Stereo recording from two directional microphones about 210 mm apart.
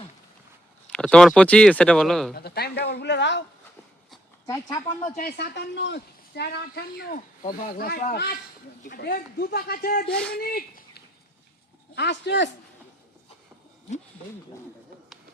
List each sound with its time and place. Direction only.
0.9 s speech: 5° left (ahead or behind)
2.3 s speech: 50° left (ahead or behind)
4.4 s speech: 15° left (ahead or behind)
5.1 s speech: 50° left (ahead or behind)